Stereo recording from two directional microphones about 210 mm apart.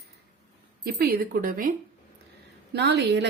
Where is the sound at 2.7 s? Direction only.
55° right (ahead or behind).